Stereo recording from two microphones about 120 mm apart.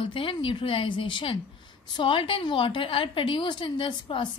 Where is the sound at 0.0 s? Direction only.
50° left (ahead or behind).